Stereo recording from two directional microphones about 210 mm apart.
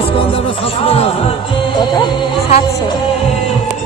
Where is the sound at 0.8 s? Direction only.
30° left (ahead or behind).